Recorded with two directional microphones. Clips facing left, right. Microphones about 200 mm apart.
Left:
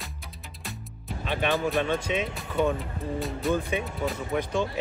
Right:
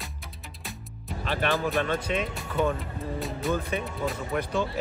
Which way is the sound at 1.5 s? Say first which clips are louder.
Left 2 dB; centre (ahead or behind).